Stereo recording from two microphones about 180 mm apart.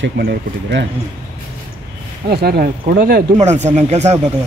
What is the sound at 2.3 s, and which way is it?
Speech, 60° right (ahead or behind).